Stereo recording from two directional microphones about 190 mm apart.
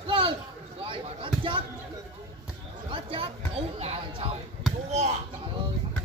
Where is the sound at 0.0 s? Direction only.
25° right (ahead or behind).